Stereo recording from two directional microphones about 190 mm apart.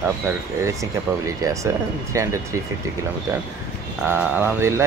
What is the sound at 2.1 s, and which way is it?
Speech, 15° right (ahead or behind).